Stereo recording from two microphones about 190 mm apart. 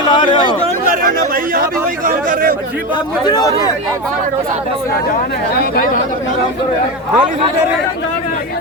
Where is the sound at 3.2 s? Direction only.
20° left (ahead or behind).